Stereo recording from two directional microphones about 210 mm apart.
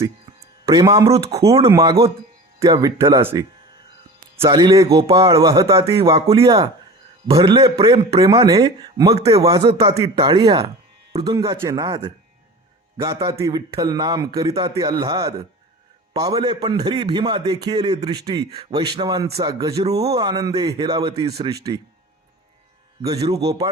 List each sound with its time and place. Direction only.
0.0 s music: 15° right (ahead or behind)
1.1 s a man's voice: 30° right (ahead or behind)
1.7 s a man's voice: 15° right (ahead or behind)
23.3 s a man's voice: 15° right (ahead or behind)